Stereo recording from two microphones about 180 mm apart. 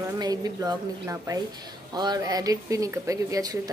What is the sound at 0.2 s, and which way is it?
Speech, 20° right (ahead or behind).